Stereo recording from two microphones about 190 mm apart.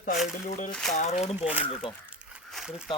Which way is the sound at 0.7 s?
Centre (ahead or behind).